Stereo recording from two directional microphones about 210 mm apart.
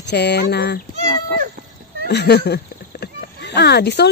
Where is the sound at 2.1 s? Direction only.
50° left (ahead or behind).